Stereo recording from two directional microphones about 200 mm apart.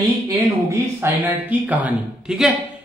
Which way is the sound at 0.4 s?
15° right (ahead or behind).